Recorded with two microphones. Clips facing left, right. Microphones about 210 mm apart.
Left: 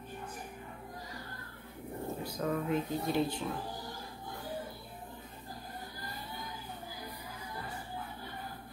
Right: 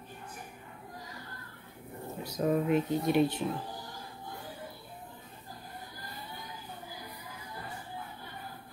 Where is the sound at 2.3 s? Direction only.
20° right (ahead or behind).